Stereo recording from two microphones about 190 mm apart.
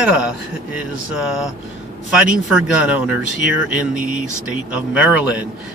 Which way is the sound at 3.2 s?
70° left (ahead or behind).